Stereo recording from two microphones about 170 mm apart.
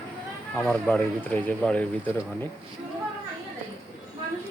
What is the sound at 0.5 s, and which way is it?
Speech, 5° left (ahead or behind).